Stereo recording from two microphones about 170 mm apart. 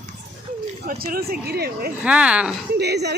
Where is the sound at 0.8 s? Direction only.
60° right (ahead or behind).